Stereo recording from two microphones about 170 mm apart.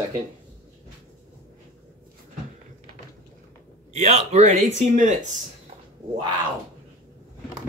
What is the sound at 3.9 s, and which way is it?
Speech, 40° right (ahead or behind).